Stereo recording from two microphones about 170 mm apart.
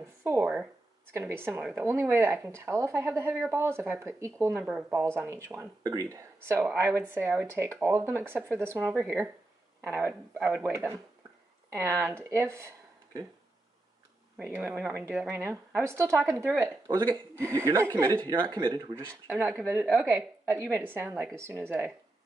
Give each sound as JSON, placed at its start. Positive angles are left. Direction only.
{"t": 0.0, "sound": "speech", "side_deg": -15}
{"t": 14.4, "sound": "speech", "side_deg": -15}
{"t": 19.2, "sound": "speech", "side_deg": -10}